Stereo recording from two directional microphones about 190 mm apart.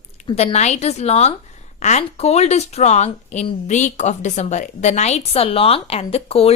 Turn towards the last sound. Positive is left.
turn(degrees=30)  # may be behind; listen again after turning